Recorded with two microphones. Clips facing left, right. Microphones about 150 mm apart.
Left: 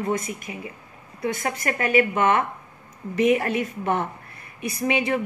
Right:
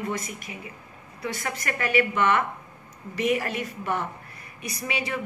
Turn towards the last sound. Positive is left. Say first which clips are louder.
# left 8 dB
turn(degrees=55)  # may be behind; listen again after turning